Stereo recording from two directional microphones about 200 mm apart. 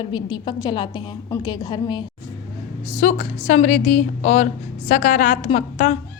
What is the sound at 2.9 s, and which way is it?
A woman's voice, 35° left (ahead or behind).